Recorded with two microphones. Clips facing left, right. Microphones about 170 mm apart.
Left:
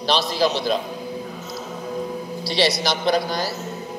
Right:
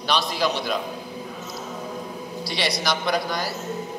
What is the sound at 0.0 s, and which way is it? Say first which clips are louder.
Speech: left 3 dB; 30° left (ahead or behind).